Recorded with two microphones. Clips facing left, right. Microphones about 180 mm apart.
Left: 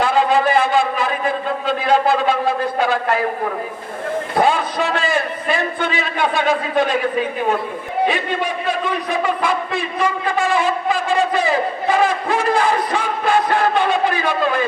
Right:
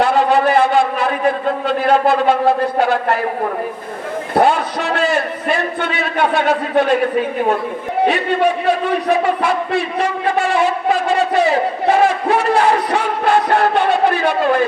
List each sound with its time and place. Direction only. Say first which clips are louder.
0.0 s a sound: right 2 dB; 65° right (ahead or behind)
1.6 s a man's voice: right 2 dB; 65° right (ahead or behind)
4.4 s a man's voice: right 3 dB; 65° right (ahead or behind)
8.0 s a man's voice: right 6 dB; 65° right (ahead or behind)